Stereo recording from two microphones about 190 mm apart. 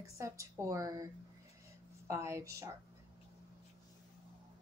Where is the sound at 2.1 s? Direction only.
15° right (ahead or behind).